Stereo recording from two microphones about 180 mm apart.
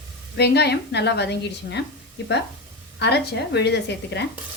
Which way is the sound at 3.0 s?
70° left (ahead or behind).